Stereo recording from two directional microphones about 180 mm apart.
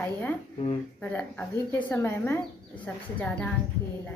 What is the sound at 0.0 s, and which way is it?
Speech, 10° left (ahead or behind).